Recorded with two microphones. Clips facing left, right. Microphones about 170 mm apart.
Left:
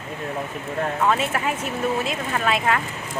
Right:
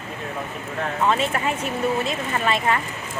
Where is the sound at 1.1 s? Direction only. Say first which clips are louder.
Right 1 dB; 5° left (ahead or behind).